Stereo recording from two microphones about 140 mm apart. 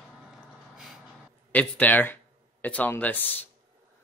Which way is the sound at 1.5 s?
10° left (ahead or behind).